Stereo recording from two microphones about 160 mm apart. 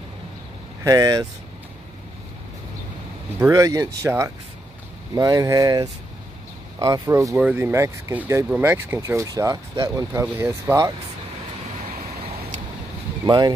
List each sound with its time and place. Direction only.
0.8 s speech: 20° right (ahead or behind)
3.3 s speech: 20° right (ahead or behind)
11.8 s vehicle: 65° right (ahead or behind)
13.2 s speech: 25° right (ahead or behind)